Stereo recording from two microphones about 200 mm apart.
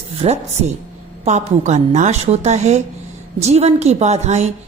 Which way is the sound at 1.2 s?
35° right (ahead or behind).